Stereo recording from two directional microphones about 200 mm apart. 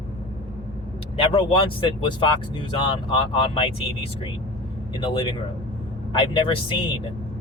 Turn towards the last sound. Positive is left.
turn(degrees=25)  # may be behind; listen again after turning